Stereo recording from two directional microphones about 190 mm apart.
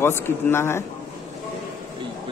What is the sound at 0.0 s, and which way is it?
Speech, 10° left (ahead or behind).